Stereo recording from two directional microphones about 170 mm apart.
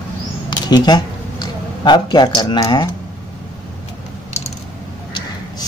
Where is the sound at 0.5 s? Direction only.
25° left (ahead or behind).